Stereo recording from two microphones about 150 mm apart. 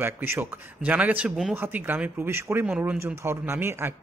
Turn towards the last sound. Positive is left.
turn(degrees=-15)  # may be behind; listen again after turning